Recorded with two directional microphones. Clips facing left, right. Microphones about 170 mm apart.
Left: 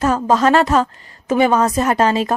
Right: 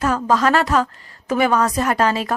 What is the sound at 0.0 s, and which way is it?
Speech, 25° left (ahead or behind).